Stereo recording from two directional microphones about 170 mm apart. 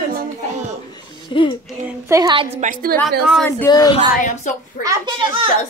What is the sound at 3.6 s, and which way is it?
Speech, 20° left (ahead or behind).